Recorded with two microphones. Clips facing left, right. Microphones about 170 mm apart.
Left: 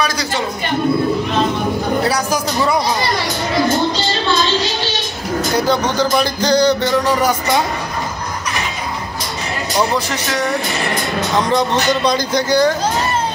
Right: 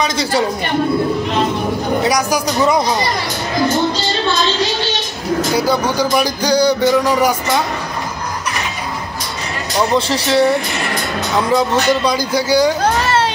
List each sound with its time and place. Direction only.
0.0 s a sound: 25° right (ahead or behind)
2.0 s speech: 15° right (ahead or behind)
5.6 s speech: 10° right (ahead or behind)
9.9 s speech: 30° right (ahead or behind)
11.5 s speech: 10° right (ahead or behind)
12.8 s a sound: 80° right